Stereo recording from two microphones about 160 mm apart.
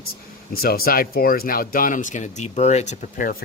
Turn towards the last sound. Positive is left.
turn(degrees=55)  # may be behind; listen again after turning